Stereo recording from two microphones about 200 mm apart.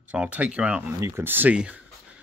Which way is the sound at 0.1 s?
5° right (ahead or behind).